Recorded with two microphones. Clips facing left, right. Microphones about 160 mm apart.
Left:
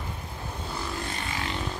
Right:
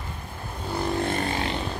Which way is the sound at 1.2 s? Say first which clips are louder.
Right 6 dB; 30° right (ahead or behind).